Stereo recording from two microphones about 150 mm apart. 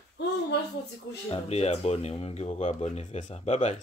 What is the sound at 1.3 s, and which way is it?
Speech, 45° left (ahead or behind).